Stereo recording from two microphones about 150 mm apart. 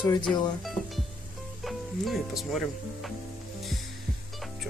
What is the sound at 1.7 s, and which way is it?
Speech, centre (ahead or behind).